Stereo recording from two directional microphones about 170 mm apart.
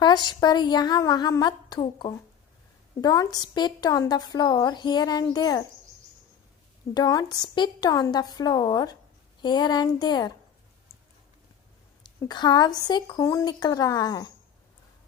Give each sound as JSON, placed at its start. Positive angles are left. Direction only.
{"t": 0.0, "sound": "a woman's voice", "side_deg": 25}
{"t": 6.9, "sound": "a woman's voice", "side_deg": 25}
{"t": 12.3, "sound": "a woman's voice", "side_deg": 25}